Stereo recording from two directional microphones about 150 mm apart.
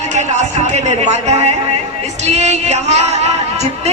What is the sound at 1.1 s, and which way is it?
Speech, 50° right (ahead or behind).